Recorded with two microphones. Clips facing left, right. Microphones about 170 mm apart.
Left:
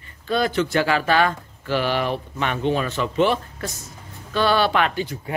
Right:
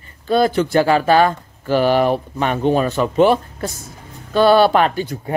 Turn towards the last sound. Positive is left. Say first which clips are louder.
# right 5 dB
turn(degrees=-40)  # may be behind; listen again after turning